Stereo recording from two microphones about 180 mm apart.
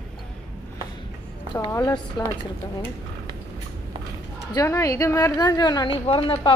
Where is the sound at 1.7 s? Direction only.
20° left (ahead or behind).